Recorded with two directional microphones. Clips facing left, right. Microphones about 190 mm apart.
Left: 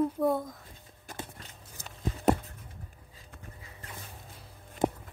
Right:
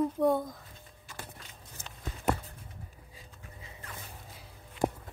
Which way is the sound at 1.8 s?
35° left (ahead or behind).